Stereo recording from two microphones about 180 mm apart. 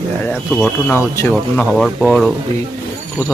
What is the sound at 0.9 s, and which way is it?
Speech, 15° left (ahead or behind).